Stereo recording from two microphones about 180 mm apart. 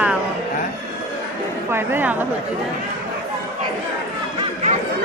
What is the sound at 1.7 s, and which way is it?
Speech, 15° right (ahead or behind).